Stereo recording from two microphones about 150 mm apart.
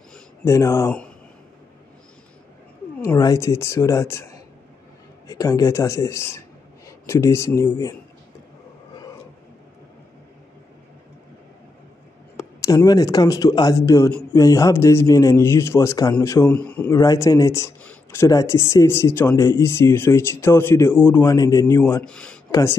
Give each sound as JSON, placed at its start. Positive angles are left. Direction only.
{"t": 0.5, "sound": "a man's voice", "side_deg": 20}
{"t": 3.2, "sound": "a man's voice", "side_deg": 25}
{"t": 12.6, "sound": "a man's voice", "side_deg": 25}
{"t": 17.0, "sound": "a man's voice", "side_deg": 25}
{"t": 22.0, "sound": "speech", "side_deg": 5}
{"t": 22.5, "sound": "speech", "side_deg": 20}